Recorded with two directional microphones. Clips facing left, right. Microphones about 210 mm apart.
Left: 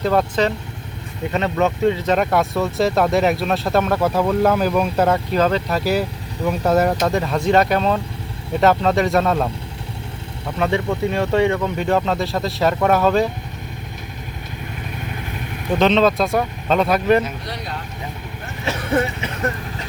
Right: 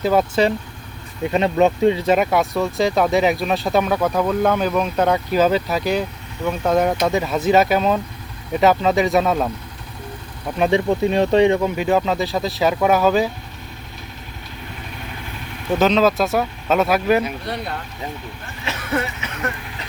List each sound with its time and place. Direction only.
0.0 s speech: 5° right (ahead or behind)
2.1 s speech: centre (ahead or behind)
10.6 s speech: 20° right (ahead or behind)
11.8 s speech: 5° right (ahead or behind)
15.8 s speech: 5° right (ahead or behind)
18.6 s a sound: 30° left (ahead or behind)